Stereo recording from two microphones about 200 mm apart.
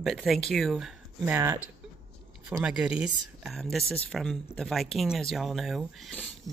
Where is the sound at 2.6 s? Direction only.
5° right (ahead or behind).